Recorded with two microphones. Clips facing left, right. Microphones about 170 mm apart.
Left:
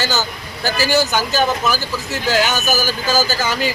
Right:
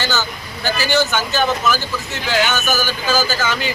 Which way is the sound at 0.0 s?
40° left (ahead or behind).